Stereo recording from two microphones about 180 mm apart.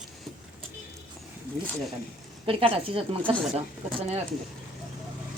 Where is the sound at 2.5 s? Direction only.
30° right (ahead or behind).